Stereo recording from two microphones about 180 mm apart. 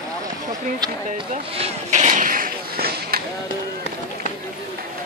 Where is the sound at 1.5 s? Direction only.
35° right (ahead or behind); by 3.2 s 55° right (ahead or behind).